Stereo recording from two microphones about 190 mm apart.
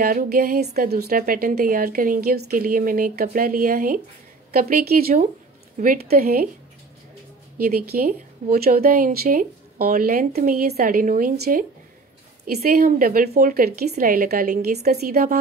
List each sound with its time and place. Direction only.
0.0 s a woman's voice: 50° right (ahead or behind)
7.6 s a woman's voice: 50° right (ahead or behind)